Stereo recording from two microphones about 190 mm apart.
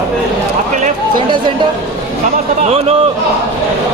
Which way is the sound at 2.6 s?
30° right (ahead or behind).